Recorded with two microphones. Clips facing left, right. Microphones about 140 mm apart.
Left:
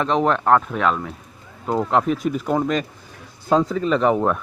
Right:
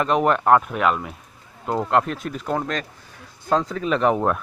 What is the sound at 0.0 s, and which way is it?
Speech, 5° right (ahead or behind).